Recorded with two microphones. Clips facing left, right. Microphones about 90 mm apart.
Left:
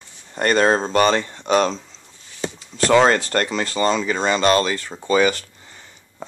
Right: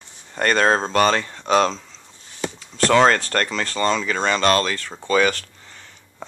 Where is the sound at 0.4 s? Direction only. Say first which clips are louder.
Left 1 dB; 10° left (ahead or behind).